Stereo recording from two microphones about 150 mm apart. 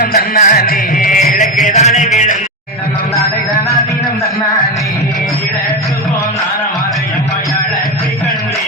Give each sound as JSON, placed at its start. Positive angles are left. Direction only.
{"t": 0.0, "sound": "music", "side_deg": 60}
{"t": 0.5, "sound": "music", "side_deg": 80}